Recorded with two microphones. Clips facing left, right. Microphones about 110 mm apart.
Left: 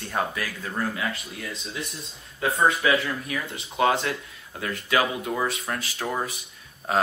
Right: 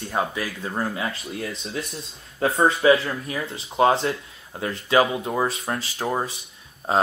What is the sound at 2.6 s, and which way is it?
Speech, 30° right (ahead or behind).